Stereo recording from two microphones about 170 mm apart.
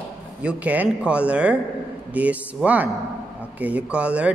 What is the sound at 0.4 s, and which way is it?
Speech, 10° right (ahead or behind).